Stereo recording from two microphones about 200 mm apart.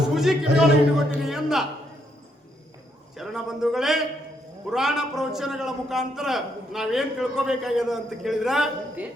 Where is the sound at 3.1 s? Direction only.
Centre (ahead or behind).